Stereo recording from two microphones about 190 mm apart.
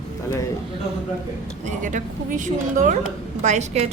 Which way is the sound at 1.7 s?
40° right (ahead or behind).